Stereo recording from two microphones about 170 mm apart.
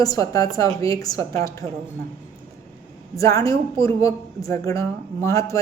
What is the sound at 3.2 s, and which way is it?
A woman's voice, 20° left (ahead or behind).